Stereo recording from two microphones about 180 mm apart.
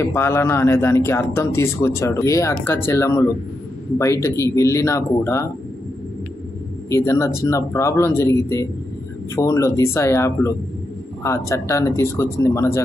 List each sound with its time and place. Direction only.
0.0 s speech: 15° left (ahead or behind)
6.9 s speech: 15° left (ahead or behind)